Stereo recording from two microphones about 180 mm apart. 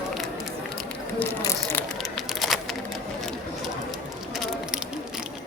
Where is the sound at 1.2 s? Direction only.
10° left (ahead or behind).